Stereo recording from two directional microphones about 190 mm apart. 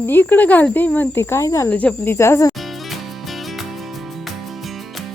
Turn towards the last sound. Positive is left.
turn(degrees=0)  # may be behind; listen again after turning